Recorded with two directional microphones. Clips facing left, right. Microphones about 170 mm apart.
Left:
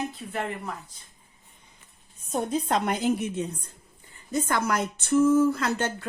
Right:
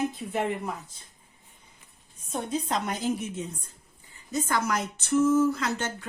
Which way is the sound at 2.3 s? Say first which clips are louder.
Left 3 dB; 55° left (ahead or behind).